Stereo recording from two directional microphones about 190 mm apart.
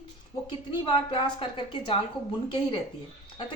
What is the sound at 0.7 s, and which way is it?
A woman's voice, 25° left (ahead or behind).